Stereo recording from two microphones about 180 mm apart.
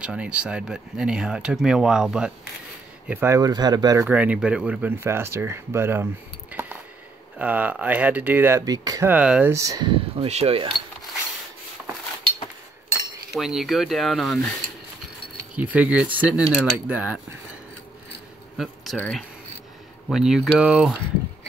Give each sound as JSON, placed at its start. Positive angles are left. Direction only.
{"t": 0.0, "sound": "speech", "side_deg": -5}
{"t": 4.1, "sound": "speech", "side_deg": -5}
{"t": 6.5, "sound": "a sound", "side_deg": -5}
{"t": 7.3, "sound": "speech", "side_deg": -10}
{"t": 9.1, "sound": "speech", "side_deg": -5}
{"t": 13.3, "sound": "speech", "side_deg": 0}
{"t": 15.5, "sound": "speech", "side_deg": -10}
{"t": 18.9, "sound": "speech", "side_deg": 5}